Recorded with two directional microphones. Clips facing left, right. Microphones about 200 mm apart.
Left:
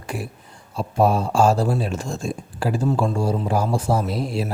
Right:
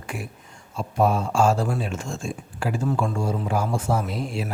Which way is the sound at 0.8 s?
35° left (ahead or behind).